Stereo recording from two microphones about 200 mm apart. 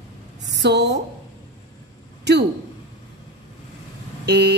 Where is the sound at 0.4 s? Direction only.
60° right (ahead or behind).